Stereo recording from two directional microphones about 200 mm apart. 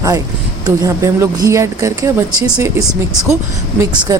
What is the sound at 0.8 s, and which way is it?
A woman's voice, 15° right (ahead or behind).